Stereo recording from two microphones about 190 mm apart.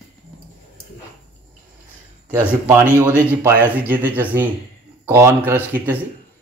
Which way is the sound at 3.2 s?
10° right (ahead or behind).